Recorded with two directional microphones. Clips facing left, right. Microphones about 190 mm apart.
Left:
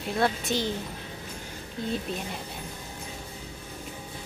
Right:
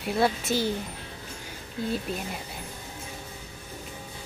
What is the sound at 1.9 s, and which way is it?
Speech, 5° right (ahead or behind).